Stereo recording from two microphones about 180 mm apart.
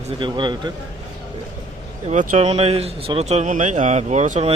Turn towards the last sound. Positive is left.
turn(degrees=-35)  # may be behind; listen again after turning